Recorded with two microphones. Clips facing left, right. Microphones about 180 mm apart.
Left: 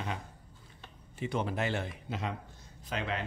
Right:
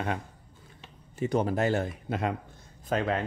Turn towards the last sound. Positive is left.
turn(degrees=-45)  # may be behind; listen again after turning